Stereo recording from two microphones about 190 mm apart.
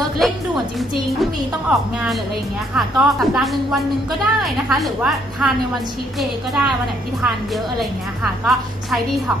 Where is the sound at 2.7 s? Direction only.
Centre (ahead or behind).